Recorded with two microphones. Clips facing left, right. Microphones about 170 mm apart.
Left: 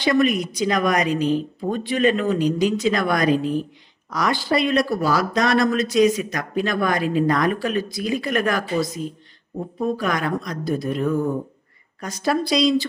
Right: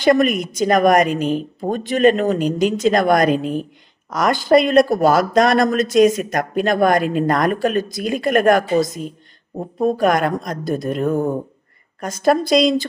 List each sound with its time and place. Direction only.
0.0 s speech: 50° right (ahead or behind)